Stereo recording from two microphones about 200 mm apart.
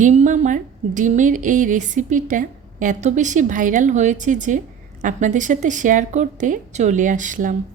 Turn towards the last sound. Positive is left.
turn(degrees=-40)  # may be behind; listen again after turning